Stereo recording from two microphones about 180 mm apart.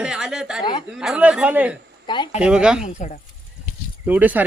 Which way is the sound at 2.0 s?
25° left (ahead or behind).